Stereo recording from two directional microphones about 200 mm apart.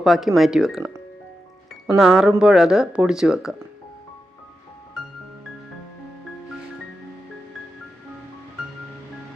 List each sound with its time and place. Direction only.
0.0 s speech: centre (ahead or behind)
2.0 s speech: centre (ahead or behind)